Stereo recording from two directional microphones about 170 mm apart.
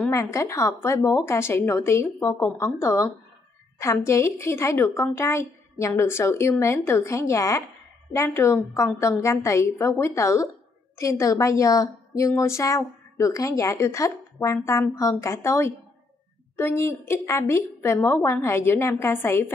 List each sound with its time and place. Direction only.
0.0 s a woman's voice: 15° left (ahead or behind)